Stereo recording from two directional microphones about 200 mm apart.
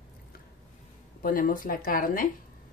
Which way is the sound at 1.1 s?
45° left (ahead or behind).